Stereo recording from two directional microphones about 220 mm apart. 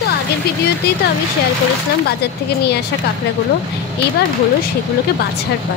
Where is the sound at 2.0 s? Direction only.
50° left (ahead or behind).